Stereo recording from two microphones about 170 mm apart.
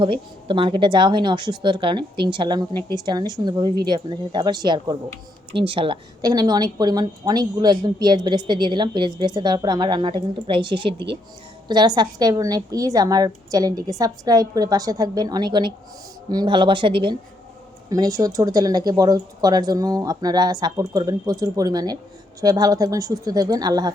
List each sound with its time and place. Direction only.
0.0 s a woman's voice: 30° right (ahead or behind)